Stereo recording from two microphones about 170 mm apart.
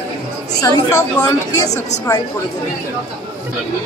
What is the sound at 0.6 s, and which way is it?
Speech, 20° left (ahead or behind).